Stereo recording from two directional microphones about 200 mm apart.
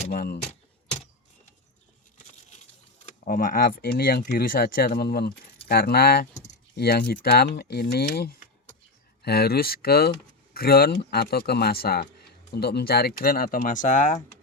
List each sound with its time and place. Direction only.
0.0 s speech: 50° left (ahead or behind)
3.1 s speech: 45° left (ahead or behind)